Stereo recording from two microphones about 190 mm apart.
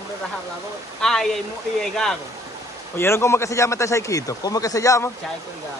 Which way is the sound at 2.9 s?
15° left (ahead or behind).